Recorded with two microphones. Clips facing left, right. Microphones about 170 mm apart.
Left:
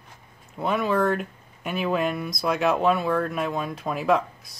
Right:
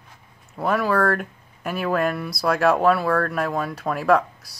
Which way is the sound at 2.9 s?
80° right.